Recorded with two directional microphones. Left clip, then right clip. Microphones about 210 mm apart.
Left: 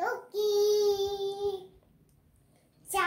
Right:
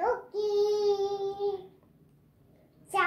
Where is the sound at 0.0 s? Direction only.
25° left (ahead or behind).